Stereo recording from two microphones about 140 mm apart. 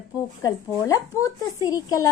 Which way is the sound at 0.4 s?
25° left (ahead or behind).